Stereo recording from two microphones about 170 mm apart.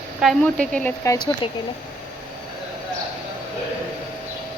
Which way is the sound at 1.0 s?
20° left (ahead or behind).